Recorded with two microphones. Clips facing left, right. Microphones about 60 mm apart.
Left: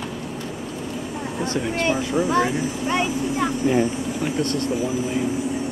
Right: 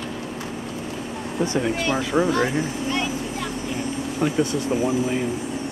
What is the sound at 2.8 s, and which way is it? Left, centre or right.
Speech, left.